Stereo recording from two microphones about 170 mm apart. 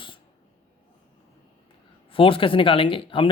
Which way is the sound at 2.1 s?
30° left (ahead or behind).